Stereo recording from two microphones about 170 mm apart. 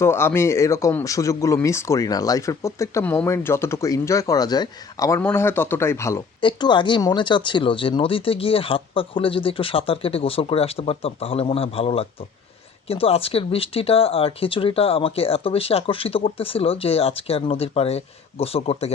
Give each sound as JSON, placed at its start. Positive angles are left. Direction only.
{"t": 0.0, "sound": "speech", "side_deg": 15}
{"t": 6.4, "sound": "speech", "side_deg": 25}